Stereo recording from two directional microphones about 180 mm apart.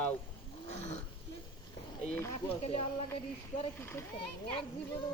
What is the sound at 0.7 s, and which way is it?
Speech, 40° left (ahead or behind).